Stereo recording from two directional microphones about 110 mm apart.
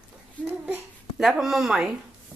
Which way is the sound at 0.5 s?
20° right (ahead or behind).